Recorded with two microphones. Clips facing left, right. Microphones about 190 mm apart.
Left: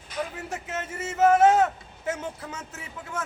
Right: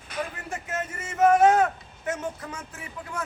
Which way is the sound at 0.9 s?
5° left (ahead or behind).